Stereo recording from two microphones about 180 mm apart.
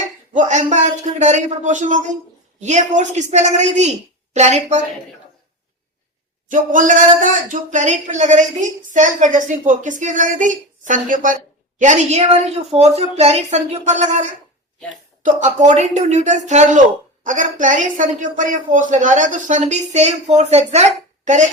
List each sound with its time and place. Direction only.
0.3 s a woman's voice: 40° right (ahead or behind)
6.5 s a man's voice: 45° right (ahead or behind)